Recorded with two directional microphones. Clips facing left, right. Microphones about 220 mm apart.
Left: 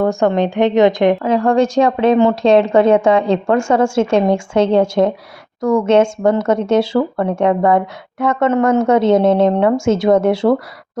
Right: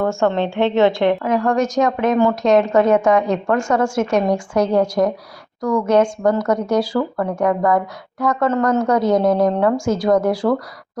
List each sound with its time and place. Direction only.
0.0 s a woman's voice: 15° left (ahead or behind)
1.3 s a woman's voice: 30° left (ahead or behind)